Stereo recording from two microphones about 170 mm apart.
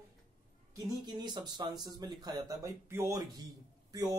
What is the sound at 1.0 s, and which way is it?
Speech, 25° right (ahead or behind).